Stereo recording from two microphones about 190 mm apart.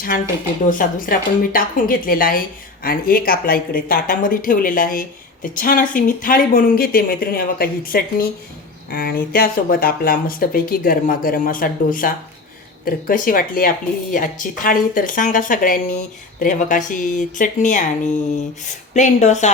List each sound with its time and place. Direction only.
0.7 s speech: 45° left (ahead or behind)